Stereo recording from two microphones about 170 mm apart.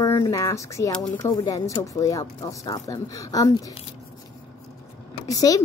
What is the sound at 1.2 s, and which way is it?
Speech, 20° left (ahead or behind).